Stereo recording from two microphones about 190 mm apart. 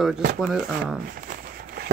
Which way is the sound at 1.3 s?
50° right (ahead or behind).